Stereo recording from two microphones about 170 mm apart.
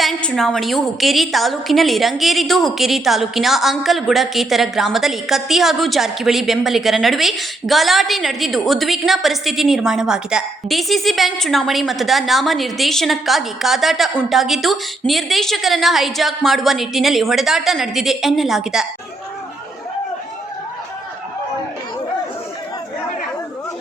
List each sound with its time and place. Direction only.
0.0 s a woman's voice: 5° left (ahead or behind)